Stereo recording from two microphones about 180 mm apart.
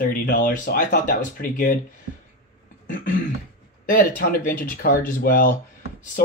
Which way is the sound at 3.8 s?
55° left (ahead or behind).